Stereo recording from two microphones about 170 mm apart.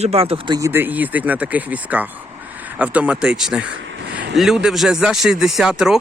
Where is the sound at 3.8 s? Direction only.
90° right.